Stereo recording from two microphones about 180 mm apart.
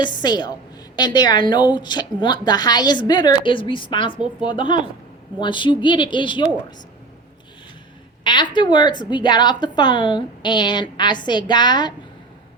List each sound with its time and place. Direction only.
0.0 s a woman's voice: 25° left (ahead or behind)
8.2 s a woman's voice: 25° left (ahead or behind)